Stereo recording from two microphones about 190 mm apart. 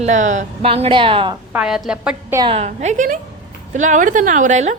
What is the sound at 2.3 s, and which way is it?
A woman's voice, 25° right (ahead or behind).